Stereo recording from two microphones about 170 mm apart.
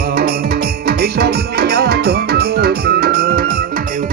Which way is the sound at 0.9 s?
65° right (ahead or behind).